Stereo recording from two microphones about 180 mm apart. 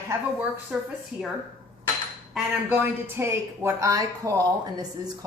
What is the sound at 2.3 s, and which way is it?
A woman's voice, 10° right (ahead or behind).